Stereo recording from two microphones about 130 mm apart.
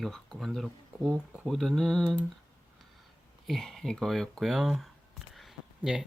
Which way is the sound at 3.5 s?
5° left (ahead or behind).